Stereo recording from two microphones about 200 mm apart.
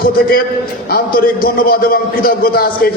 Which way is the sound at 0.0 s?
50° left (ahead or behind).